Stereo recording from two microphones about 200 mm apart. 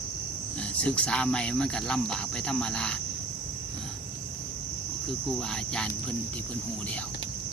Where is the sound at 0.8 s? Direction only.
5° left (ahead or behind).